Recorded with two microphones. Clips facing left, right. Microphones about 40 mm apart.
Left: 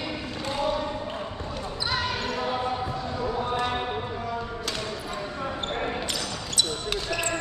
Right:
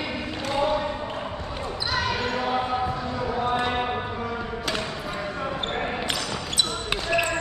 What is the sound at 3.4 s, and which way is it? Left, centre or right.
Basketball bounce, right.